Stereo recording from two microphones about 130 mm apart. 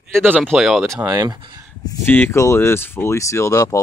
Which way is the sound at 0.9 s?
25° right (ahead or behind).